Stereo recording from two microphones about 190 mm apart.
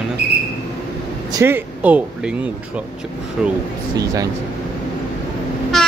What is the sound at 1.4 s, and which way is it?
Speech, 10° right (ahead or behind).